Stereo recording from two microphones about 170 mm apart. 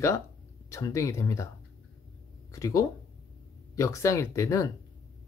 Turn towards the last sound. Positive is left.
turn(degrees=20)  # may be behind; listen again after turning